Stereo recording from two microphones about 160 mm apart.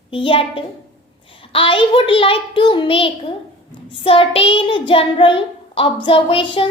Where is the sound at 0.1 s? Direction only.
35° left (ahead or behind).